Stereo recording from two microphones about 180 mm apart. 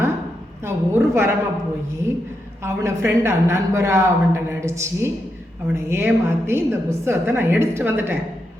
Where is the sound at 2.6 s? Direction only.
15° right (ahead or behind).